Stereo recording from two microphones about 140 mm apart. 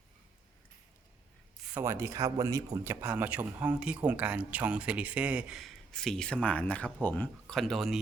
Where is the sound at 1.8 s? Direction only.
20° right (ahead or behind).